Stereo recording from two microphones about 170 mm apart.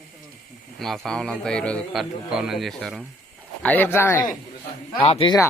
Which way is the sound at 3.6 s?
10° left (ahead or behind).